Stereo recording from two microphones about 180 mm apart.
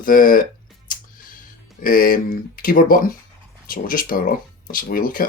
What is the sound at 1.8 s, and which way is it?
Speech, 50° left (ahead or behind).